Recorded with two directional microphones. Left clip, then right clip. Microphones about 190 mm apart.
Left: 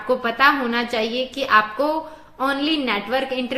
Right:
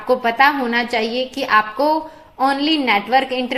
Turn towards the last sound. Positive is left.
turn(degrees=-15)  # may be behind; listen again after turning